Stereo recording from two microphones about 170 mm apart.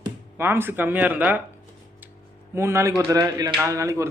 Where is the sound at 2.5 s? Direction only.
15° right (ahead or behind).